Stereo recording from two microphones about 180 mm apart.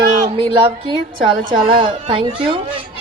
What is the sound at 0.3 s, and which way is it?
A woman's voice, 30° right (ahead or behind).